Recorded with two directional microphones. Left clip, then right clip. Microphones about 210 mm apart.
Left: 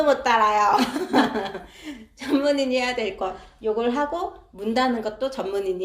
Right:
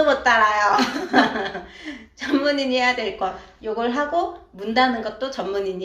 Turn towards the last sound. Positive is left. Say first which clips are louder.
# right 1 dB
turn(degrees=50)  # may be behind; listen again after turning